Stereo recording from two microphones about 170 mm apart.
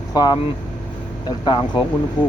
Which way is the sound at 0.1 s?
25° left (ahead or behind).